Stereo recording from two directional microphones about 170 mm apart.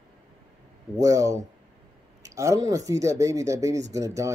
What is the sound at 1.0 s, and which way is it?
Speech, 20° right (ahead or behind).